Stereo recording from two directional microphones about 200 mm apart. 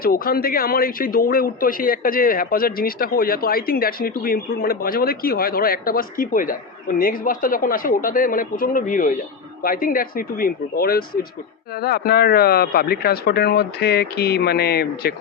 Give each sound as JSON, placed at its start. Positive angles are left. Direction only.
{"t": 0.0, "sound": "a man's voice", "side_deg": 45}